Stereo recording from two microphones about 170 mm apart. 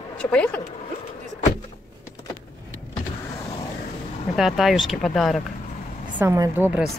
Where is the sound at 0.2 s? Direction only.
5° left (ahead or behind).